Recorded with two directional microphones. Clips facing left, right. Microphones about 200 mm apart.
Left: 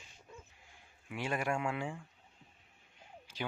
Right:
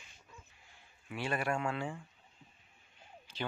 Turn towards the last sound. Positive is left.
turn(degrees=10)  # may be behind; listen again after turning